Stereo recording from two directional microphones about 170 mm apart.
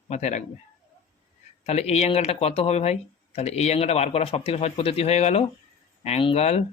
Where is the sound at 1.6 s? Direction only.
40° left (ahead or behind).